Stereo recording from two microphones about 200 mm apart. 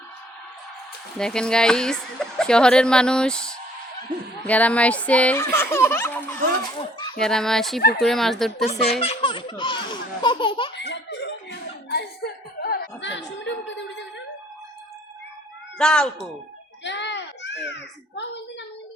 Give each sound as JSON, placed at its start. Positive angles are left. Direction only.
{"t": 1.2, "sound": "a woman's voice", "side_deg": 5}
{"t": 8.9, "sound": "baby laughter", "side_deg": 30}
{"t": 10.8, "sound": "laughter", "side_deg": 60}
{"t": 11.9, "sound": "chuckle", "side_deg": 55}
{"t": 15.8, "sound": "a woman's voice", "side_deg": 5}
{"t": 16.8, "sound": "a sound", "side_deg": 60}